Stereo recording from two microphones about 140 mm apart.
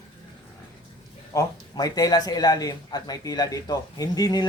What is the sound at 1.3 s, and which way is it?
Speech, 25° left (ahead or behind).